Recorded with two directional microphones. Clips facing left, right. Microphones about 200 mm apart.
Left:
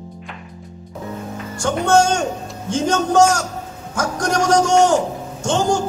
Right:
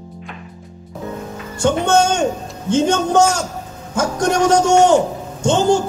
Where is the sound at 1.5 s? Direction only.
25° right (ahead or behind).